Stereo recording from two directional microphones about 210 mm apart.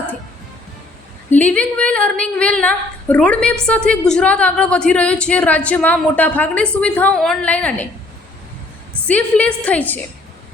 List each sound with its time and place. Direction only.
1.3 s a woman's voice: 5° left (ahead or behind)
9.0 s a woman's voice: 5° left (ahead or behind)